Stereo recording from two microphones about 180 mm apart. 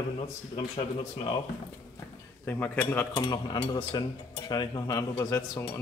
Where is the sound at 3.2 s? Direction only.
25° left (ahead or behind).